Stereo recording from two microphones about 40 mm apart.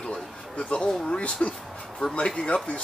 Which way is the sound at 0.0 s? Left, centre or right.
Left.